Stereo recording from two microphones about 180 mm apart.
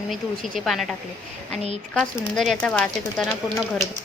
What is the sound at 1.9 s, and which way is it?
Dishes, 5° left (ahead or behind).